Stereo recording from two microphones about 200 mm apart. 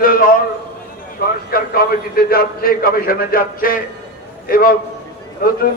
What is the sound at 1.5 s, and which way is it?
A man's voice, 50° left (ahead or behind).